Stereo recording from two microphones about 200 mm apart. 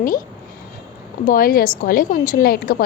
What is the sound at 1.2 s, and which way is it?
A woman's voice, 45° left (ahead or behind).